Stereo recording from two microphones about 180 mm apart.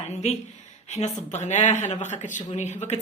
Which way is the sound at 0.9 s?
40° left (ahead or behind).